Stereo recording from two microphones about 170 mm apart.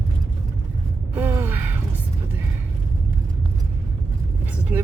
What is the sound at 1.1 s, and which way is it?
Gasp, 15° right (ahead or behind).